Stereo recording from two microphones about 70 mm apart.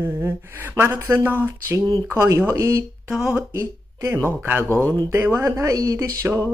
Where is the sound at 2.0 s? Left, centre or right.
Right.